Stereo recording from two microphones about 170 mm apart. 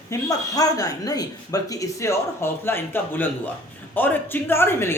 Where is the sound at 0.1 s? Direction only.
20° left (ahead or behind).